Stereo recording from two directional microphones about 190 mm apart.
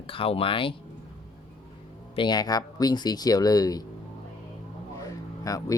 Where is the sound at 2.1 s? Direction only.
20° left (ahead or behind).